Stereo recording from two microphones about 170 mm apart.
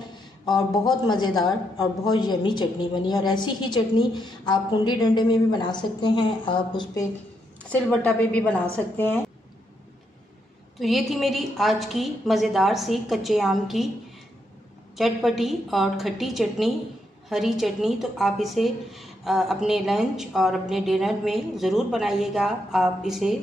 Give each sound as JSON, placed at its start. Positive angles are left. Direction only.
{"t": 0.5, "sound": "a woman's voice", "side_deg": 25}
{"t": 7.7, "sound": "a woman's voice", "side_deg": 5}
{"t": 10.8, "sound": "a woman's voice", "side_deg": 0}
{"t": 15.0, "sound": "a woman's voice", "side_deg": 0}